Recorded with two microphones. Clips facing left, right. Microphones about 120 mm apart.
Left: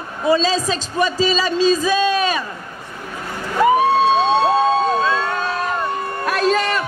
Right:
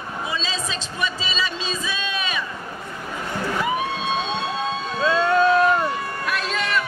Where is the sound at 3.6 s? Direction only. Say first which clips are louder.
Left 15 dB; 40° left (ahead or behind).